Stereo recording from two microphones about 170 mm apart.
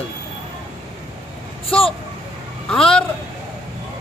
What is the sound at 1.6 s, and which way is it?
Speech, 35° left (ahead or behind).